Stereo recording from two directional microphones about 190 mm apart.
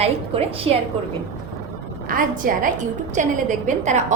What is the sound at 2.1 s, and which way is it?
A woman's voice, 45° right (ahead or behind).